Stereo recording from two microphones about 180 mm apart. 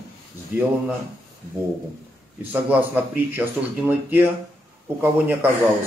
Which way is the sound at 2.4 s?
10° right (ahead or behind).